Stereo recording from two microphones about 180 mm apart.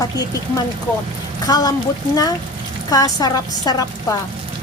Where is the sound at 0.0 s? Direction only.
20° left (ahead or behind).